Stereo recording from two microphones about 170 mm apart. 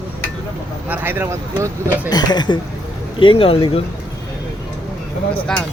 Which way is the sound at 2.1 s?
25° left (ahead or behind).